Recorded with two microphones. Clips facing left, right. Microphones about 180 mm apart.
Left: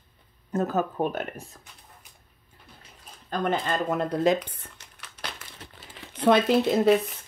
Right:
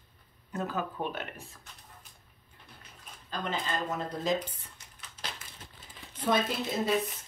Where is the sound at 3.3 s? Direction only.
55° left (ahead or behind).